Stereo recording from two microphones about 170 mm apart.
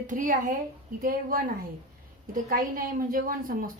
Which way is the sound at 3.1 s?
55° right (ahead or behind).